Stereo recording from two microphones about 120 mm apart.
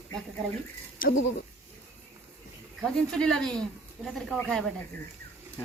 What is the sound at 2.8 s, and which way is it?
Speech, 5° left (ahead or behind).